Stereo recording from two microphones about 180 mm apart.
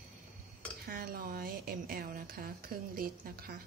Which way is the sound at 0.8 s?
55° right (ahead or behind).